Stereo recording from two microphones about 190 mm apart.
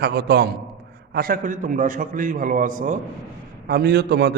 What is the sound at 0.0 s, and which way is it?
A man's voice, 60° right (ahead or behind).